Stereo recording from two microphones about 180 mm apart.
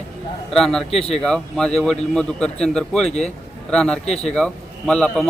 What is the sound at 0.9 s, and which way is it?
Speech, 35° left (ahead or behind).